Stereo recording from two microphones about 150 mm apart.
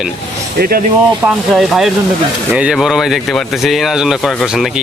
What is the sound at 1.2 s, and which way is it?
Speech, 15° right (ahead or behind).